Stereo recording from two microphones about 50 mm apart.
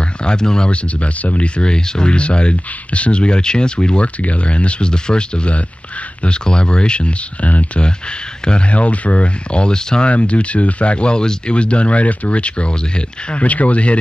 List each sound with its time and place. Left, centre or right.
0.2 s speech: centre